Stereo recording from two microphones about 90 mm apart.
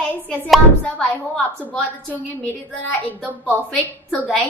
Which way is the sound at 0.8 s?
15° left (ahead or behind).